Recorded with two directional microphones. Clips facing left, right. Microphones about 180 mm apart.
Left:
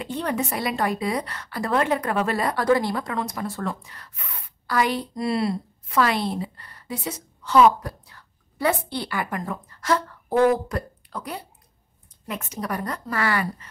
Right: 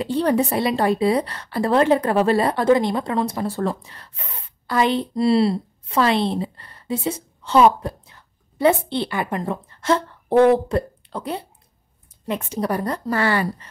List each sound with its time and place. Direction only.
0.0 s a woman's voice: 35° right (ahead or behind)